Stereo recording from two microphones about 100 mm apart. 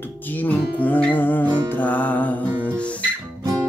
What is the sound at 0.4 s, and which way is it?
Music, 15° left (ahead or behind).